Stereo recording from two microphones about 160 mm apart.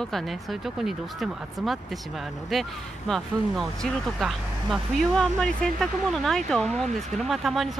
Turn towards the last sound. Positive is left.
turn(degrees=0)  # may be behind; listen again after turning